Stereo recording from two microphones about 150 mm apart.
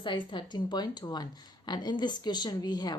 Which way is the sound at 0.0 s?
30° left (ahead or behind).